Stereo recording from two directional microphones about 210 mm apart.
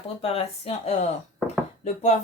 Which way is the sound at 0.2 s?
30° left (ahead or behind).